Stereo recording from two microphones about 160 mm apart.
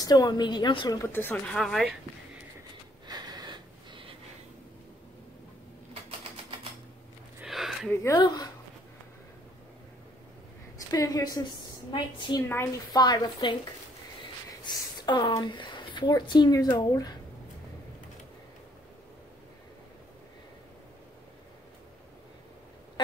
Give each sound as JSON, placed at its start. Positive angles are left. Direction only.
{"t": 0.0, "sound": "a woman's voice", "side_deg": 25}
{"t": 3.1, "sound": "a sound", "side_deg": -25}
{"t": 7.4, "sound": "a sound", "side_deg": 0}
{"t": 7.9, "sound": "a woman's voice", "side_deg": 15}
{"t": 10.9, "sound": "a woman's voice", "side_deg": 25}
{"t": 15.0, "sound": "speech", "side_deg": 25}